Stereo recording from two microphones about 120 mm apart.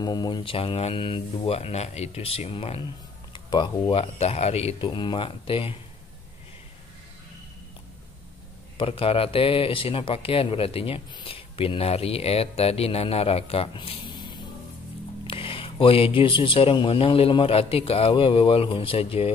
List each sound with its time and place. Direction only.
0.0 s speech: 35° left (ahead or behind)
0.4 s speech: 50° left (ahead or behind)
3.3 s speech: 40° left (ahead or behind)
4.0 s speech: 60° left (ahead or behind)
4.7 s speech: 40° left (ahead or behind)
8.7 s speech: 50° left (ahead or behind)
13.7 s a sound: 40° left (ahead or behind)
15.2 s speech: 50° left (ahead or behind)